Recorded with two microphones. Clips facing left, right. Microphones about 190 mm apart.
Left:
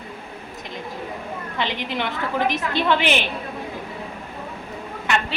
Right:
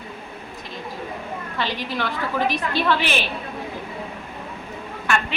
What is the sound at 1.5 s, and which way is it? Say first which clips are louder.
A woman's voice: left 1 dB; 20° left (ahead or behind).